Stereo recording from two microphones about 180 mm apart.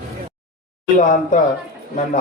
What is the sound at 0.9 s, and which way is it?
Speech, 45° left (ahead or behind).